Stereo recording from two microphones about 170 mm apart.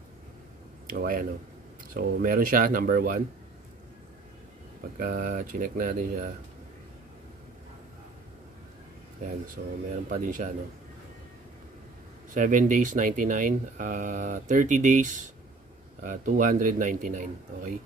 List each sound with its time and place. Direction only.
0.8 s speech: 55° right (ahead or behind)
4.9 s speech: 55° right (ahead or behind)
9.6 s speech: 60° right (ahead or behind)
12.4 s speech: 50° right (ahead or behind)